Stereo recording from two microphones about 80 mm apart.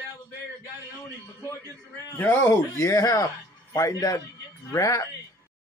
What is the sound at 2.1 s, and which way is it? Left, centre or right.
Speech, left.